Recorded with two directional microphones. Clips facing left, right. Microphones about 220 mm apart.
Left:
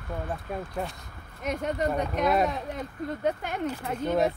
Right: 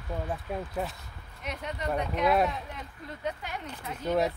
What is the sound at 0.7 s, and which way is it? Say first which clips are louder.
Speech: even; centre (ahead or behind).